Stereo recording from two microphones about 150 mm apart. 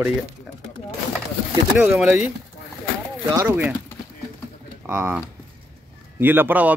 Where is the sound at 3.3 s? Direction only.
15° right (ahead or behind).